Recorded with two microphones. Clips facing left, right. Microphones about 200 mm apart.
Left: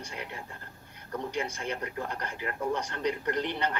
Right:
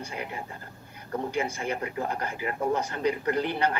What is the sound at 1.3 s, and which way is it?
A woman's voice, 5° right (ahead or behind).